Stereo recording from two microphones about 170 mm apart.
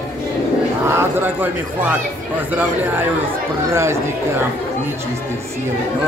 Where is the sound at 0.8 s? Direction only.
15° right (ahead or behind).